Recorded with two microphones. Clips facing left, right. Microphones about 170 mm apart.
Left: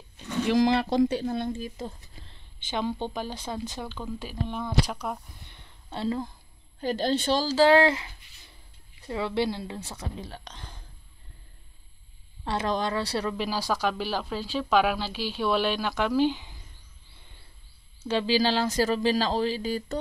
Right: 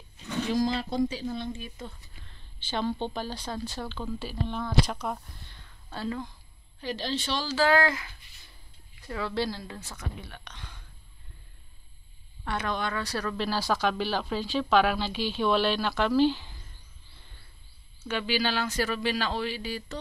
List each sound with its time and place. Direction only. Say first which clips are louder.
0.5 s speech: left 6 dB; 85° left
1.2 s a woman's voice: left 4 dB; 50° left (ahead or behind)
1.6 s speech: left 6 dB; 40° left (ahead or behind)
2.7 s speech: even; 10° left (ahead or behind)
5.4 s a sound: left 1 dB; 20° left (ahead or behind)
6.8 s a woman's voice: left 6 dB; 45° left (ahead or behind)
7.5 s speech: left 4 dB; 30° left (ahead or behind)
12.4 s speech: left 3 dB; 35° left (ahead or behind)
13.3 s speech: even; 10° left (ahead or behind)
18.0 s speech: left 5 dB; 35° left (ahead or behind)